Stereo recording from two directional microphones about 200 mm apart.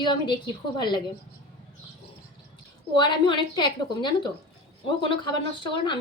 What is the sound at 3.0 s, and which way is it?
Speech, 25° left (ahead or behind).